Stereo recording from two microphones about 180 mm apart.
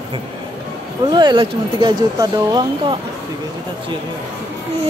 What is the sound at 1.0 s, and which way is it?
Speech, 25° right (ahead or behind).